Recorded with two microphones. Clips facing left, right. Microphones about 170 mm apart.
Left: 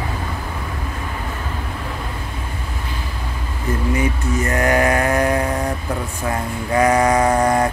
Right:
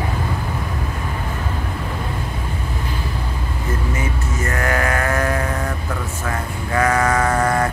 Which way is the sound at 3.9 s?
20° left (ahead or behind).